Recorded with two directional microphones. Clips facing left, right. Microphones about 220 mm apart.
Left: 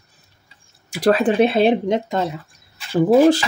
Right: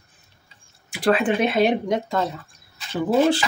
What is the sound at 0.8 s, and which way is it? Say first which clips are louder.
Speech: left 3 dB; 40° left (ahead or behind).